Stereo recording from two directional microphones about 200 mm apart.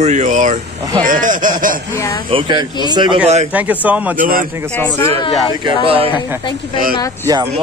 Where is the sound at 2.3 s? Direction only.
25° right (ahead or behind).